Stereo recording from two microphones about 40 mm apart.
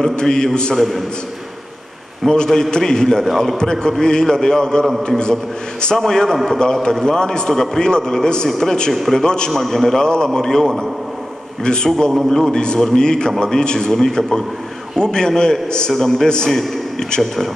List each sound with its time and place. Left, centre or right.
0.1 s a man's voice: centre
0.7 s a man's voice: centre
2.2 s a man's voice: centre
3.3 s a man's voice: centre
4.0 s a man's voice: centre
6.3 s a man's voice: centre
6.6 s a man's voice: centre
9.6 s a man's voice: centre